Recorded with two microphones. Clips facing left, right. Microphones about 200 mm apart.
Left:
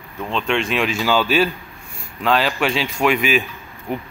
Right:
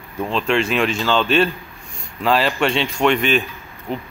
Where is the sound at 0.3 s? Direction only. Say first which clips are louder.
Right 2 dB; centre (ahead or behind).